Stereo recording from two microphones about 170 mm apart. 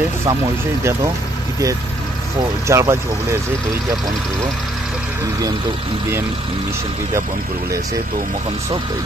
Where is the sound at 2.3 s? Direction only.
20° right (ahead or behind).